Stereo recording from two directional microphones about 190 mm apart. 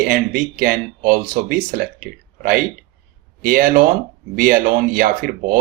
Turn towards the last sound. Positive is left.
turn(degrees=-45)  # may be behind; listen again after turning